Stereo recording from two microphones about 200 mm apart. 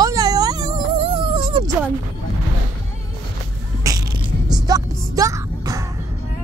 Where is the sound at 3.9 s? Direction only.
15° right (ahead or behind).